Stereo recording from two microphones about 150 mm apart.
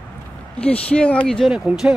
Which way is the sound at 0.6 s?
5° left (ahead or behind).